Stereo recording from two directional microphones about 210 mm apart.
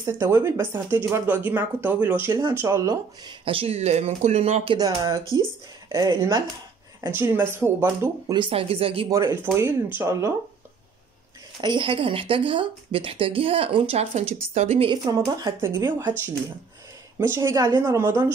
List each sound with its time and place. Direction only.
0.0 s speech: 15° right (ahead or behind); by 4.7 s 30° right (ahead or behind)
4.7 s speech: 15° right (ahead or behind)
8.4 s speech: 25° right (ahead or behind)
9.1 s speech: 15° right (ahead or behind)
11.6 s speech: 25° right (ahead or behind)
15.0 s speech: 15° right (ahead or behind)
17.2 s speech: 15° right (ahead or behind)